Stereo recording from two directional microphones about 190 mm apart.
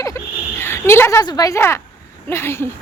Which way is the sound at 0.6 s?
15° left (ahead or behind).